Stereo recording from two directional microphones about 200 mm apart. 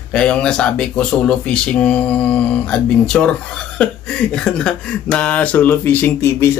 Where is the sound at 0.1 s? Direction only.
5° left (ahead or behind).